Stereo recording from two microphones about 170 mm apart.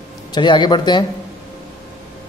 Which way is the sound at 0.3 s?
25° left (ahead or behind).